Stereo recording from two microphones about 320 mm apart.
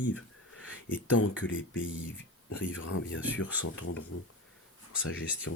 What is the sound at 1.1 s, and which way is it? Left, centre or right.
Speech, left.